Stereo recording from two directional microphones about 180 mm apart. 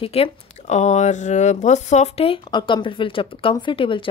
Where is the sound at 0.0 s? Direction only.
35° left (ahead or behind).